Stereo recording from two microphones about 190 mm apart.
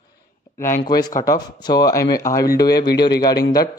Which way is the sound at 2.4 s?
55° left (ahead or behind).